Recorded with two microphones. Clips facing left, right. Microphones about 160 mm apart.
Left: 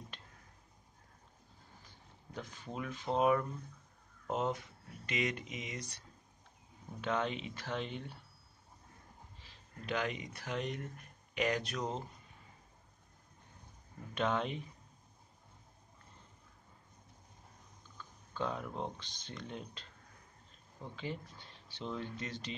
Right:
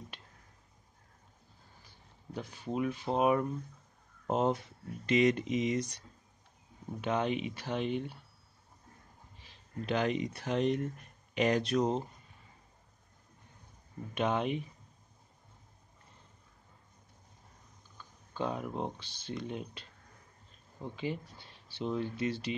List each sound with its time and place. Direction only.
2.3 s speech: 15° right (ahead or behind)
4.3 s speech: 35° right (ahead or behind)
7.0 s speech: 15° right (ahead or behind)
9.8 s speech: 30° right (ahead or behind)
14.1 s speech: 15° right (ahead or behind)
18.3 s speech: 15° right (ahead or behind)
20.9 s speech: 10° right (ahead or behind)